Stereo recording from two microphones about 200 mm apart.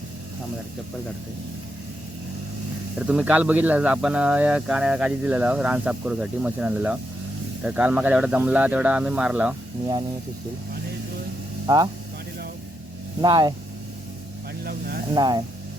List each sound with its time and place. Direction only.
3.1 s speech: 5° right (ahead or behind)
11.6 s speech: 20° right (ahead or behind)
13.2 s speech: 20° right (ahead or behind)
14.6 s speech: 50° right (ahead or behind)
15.1 s speech: 20° right (ahead or behind)